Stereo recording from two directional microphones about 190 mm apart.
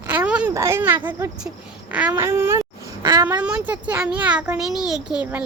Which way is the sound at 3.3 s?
5° right (ahead or behind).